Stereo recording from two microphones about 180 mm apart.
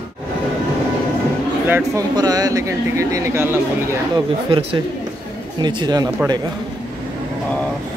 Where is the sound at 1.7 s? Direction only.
10° right (ahead or behind).